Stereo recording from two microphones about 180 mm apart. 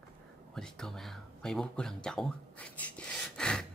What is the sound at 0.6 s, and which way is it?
Speech, 5° left (ahead or behind).